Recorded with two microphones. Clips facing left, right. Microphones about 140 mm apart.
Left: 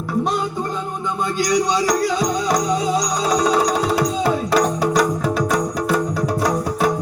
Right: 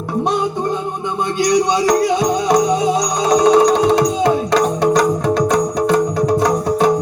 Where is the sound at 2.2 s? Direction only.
25° right (ahead or behind).